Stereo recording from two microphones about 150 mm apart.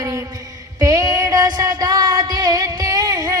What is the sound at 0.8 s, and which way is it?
Music, 20° right (ahead or behind).